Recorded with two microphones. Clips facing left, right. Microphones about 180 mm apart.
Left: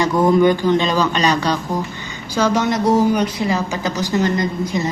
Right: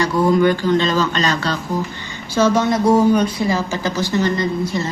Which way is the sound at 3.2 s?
20° left (ahead or behind).